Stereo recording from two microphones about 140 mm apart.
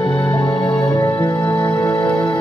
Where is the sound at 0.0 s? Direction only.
35° left (ahead or behind).